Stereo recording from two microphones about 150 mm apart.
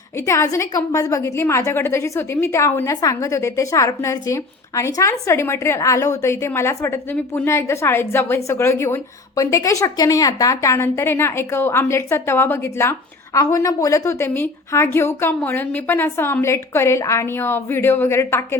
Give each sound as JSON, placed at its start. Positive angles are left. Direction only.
{"t": 0.3, "sound": "a woman's voice", "side_deg": 20}